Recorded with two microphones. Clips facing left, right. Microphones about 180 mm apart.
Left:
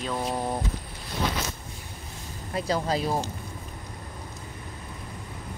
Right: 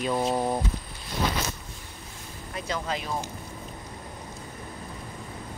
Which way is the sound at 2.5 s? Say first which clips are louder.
Left 5 dB; 35° left (ahead or behind).